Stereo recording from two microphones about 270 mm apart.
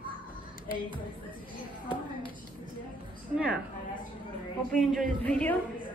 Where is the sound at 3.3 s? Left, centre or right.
Centre.